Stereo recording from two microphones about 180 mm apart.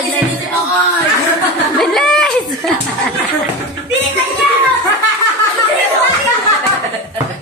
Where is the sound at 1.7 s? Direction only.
5° left (ahead or behind).